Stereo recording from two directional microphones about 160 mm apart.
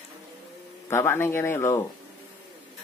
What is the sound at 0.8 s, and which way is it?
Speech, 15° left (ahead or behind).